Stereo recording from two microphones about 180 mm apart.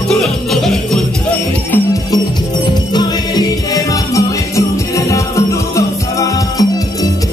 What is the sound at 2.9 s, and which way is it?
Music, 20° left (ahead or behind).